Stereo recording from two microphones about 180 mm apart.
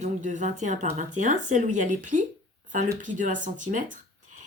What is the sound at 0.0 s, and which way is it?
Speech, 40° right (ahead or behind).